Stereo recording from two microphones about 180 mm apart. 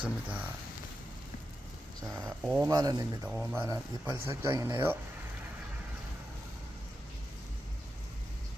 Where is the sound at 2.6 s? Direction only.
20° right (ahead or behind).